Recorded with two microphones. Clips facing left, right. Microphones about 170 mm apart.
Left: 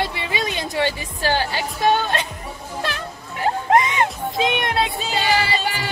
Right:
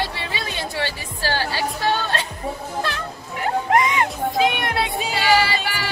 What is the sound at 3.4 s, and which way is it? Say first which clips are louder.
Music: left 1 dB; 25° left (ahead or behind).